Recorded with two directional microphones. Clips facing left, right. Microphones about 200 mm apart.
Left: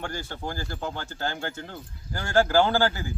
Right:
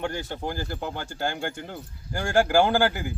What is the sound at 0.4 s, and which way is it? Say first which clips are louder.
Speech: even; 15° right (ahead or behind).